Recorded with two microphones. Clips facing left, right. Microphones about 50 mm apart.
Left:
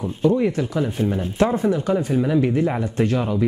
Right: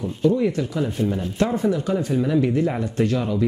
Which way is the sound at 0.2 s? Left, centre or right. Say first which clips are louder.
Left 1 dB; left.